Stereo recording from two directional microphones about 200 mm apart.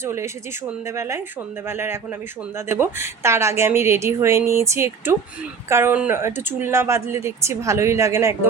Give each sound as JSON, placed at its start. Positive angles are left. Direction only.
{"t": 0.0, "sound": "speech", "side_deg": -15}